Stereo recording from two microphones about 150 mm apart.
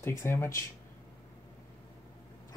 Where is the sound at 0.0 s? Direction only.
15° left (ahead or behind).